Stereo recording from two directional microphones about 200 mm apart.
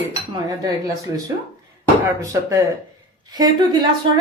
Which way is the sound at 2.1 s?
15° right (ahead or behind).